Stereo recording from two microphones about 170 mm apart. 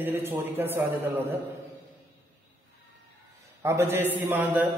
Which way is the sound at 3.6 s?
15° right (ahead or behind).